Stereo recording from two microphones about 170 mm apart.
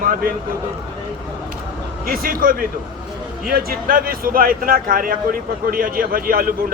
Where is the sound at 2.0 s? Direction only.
60° right (ahead or behind).